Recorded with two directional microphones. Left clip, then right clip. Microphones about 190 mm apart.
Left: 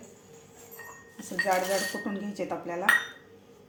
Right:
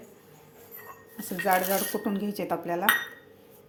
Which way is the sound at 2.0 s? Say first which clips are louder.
Right 3 dB; 50° right (ahead or behind).